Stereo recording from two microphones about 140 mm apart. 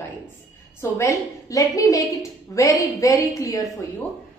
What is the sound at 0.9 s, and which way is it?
A woman's voice, 20° left (ahead or behind).